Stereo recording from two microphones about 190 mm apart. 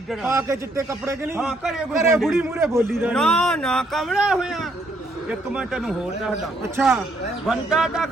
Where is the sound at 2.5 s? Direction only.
15° right (ahead or behind).